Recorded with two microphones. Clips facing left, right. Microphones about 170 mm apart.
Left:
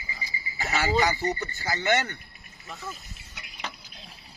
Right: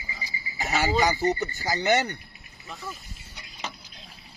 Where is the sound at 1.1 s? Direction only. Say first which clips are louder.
Right 4 dB; 40° right (ahead or behind).